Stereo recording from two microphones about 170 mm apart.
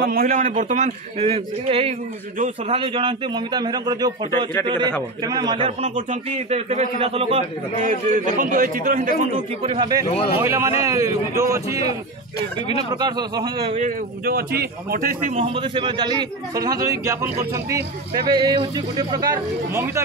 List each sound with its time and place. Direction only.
0.0 s a man's voice: 60° right (ahead or behind); by 5.7 s 25° right (ahead or behind)
5.8 s a man's voice: 40° right (ahead or behind)
9.6 s a man's voice: 30° right (ahead or behind)
10.0 s speech: 35° left (ahead or behind)
10.4 s a man's voice: 15° right (ahead or behind)
13.7 s speech: 55° right (ahead or behind)
15.4 s a man's voice: 30° right (ahead or behind); by 20.0 s 15° right (ahead or behind)